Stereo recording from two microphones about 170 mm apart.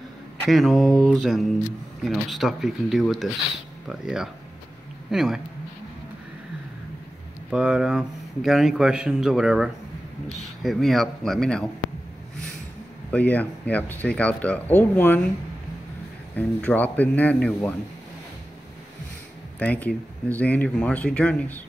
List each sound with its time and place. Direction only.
0.5 s a man's voice: centre (ahead or behind)
7.5 s a man's voice: 5° right (ahead or behind)
13.1 s speech: 10° left (ahead or behind)
16.3 s speech: 10° left (ahead or behind)
19.6 s speech: 10° left (ahead or behind)